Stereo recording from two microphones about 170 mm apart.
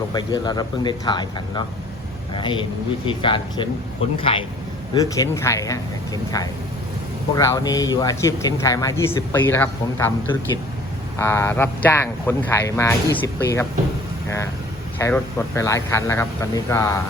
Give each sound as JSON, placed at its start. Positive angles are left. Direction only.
{"t": 0.1, "sound": "a man's voice", "side_deg": 25}
{"t": 4.9, "sound": "a man's voice", "side_deg": 20}
{"t": 7.3, "sound": "a man's voice", "side_deg": 20}
{"t": 14.9, "sound": "speech", "side_deg": 15}